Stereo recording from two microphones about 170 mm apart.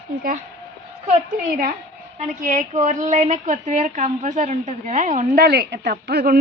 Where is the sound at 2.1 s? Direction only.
50° right (ahead or behind).